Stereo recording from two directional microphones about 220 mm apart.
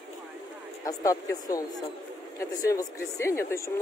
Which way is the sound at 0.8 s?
15° left (ahead or behind).